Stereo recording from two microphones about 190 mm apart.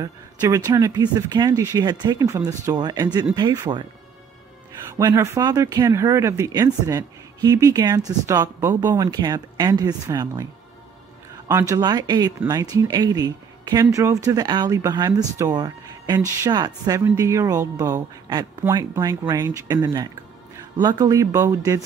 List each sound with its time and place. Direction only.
0.0 s speech: 20° right (ahead or behind)
4.8 s speech: 15° right (ahead or behind)
11.7 s speech: 20° right (ahead or behind)